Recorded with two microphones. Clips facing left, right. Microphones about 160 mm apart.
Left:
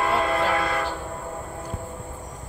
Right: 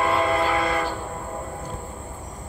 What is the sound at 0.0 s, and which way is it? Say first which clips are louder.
Train: right 1 dB; centre (ahead or behind).